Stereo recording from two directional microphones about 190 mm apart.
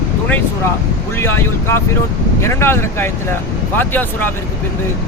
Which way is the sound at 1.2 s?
10° left (ahead or behind).